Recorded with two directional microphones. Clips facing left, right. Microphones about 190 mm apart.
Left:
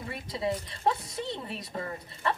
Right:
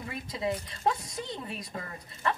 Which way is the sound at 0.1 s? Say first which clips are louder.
Left 1 dB; 30° left (ahead or behind).